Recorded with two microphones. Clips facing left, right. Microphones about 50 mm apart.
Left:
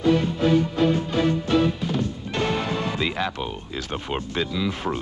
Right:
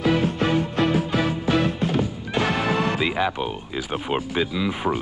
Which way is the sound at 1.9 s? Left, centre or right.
Centre.